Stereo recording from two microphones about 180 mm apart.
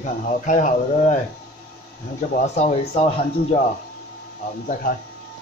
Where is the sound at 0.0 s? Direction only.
45° left (ahead or behind).